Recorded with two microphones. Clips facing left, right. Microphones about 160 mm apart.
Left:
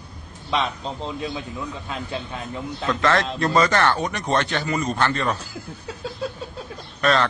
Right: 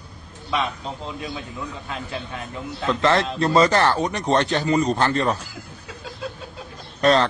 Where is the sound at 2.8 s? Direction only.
25° right (ahead or behind).